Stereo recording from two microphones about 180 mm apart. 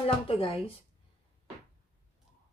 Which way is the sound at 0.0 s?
30° left (ahead or behind).